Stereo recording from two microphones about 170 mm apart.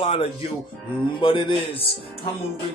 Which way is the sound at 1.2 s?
30° left (ahead or behind).